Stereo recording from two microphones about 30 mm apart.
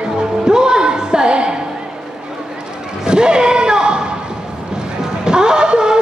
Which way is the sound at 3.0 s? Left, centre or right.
Right.